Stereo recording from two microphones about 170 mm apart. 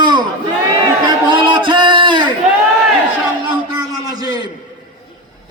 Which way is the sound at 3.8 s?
25° right (ahead or behind).